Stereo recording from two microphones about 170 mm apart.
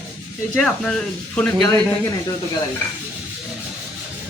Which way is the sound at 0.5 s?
5° left (ahead or behind).